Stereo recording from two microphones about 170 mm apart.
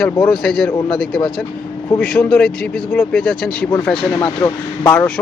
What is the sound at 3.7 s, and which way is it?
Speech, 15° left (ahead or behind).